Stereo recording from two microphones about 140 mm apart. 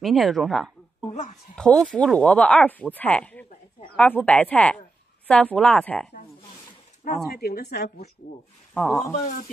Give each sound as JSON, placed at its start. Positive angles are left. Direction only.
{"t": 0.0, "sound": "speech", "side_deg": 0}
{"t": 7.3, "sound": "speech", "side_deg": 90}
{"t": 8.7, "sound": "speech", "side_deg": 10}